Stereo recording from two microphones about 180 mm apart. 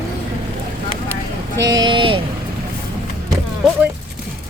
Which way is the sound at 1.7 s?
25° right (ahead or behind).